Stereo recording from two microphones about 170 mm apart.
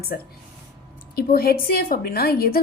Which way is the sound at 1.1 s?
65° left (ahead or behind).